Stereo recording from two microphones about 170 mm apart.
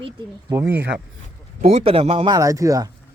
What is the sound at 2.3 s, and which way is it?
Speech, 20° right (ahead or behind).